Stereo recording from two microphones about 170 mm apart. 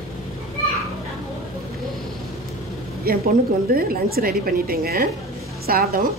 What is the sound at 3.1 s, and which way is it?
A woman's voice, 60° right (ahead or behind).